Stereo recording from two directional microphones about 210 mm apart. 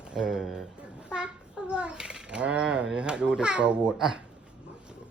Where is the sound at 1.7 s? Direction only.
5° right (ahead or behind).